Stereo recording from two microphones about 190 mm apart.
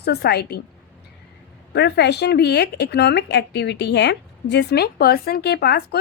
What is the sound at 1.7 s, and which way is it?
Speech, 60° left (ahead or behind).